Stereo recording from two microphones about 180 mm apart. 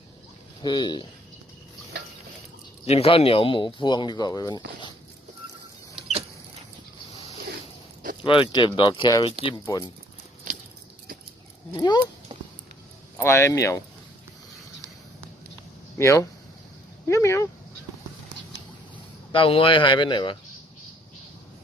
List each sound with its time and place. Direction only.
0.6 s speech: 25° left (ahead or behind)
2.8 s speech: 35° left (ahead or behind)
6.0 s vehicle: 25° right (ahead or behind)
8.2 s speech: 30° left (ahead or behind)
10.5 s a sound: 45° right (ahead or behind)
11.8 s speech: 25° left (ahead or behind)
13.1 s speech: 15° left (ahead or behind)
16.0 s speech: 15° left (ahead or behind)
19.3 s speech: 30° left (ahead or behind)